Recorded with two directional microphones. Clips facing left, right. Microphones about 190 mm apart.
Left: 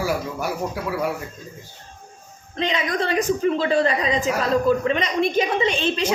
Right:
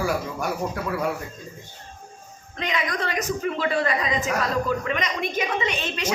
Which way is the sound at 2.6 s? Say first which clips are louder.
Left 4 dB; 30° left (ahead or behind).